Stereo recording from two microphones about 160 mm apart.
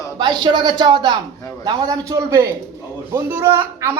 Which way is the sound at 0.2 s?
30° right (ahead or behind).